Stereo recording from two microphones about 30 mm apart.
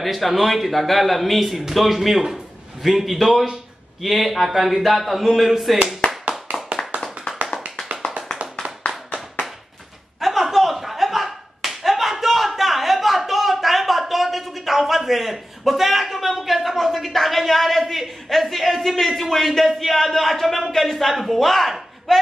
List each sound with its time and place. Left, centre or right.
0.0 s a man's voice: centre
6.5 s clapping: right
10.2 s slap: centre
19.8 s a sound: centre